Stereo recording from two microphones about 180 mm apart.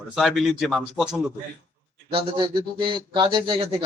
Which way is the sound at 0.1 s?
Centre (ahead or behind).